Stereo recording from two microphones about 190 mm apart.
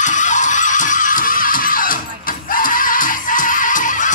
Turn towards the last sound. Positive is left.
turn(degrees=45)  # may be behind; listen again after turning